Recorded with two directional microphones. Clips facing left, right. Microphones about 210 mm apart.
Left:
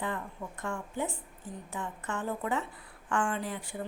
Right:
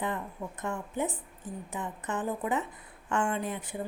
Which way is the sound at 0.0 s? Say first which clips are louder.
Right 2 dB; 20° right (ahead or behind).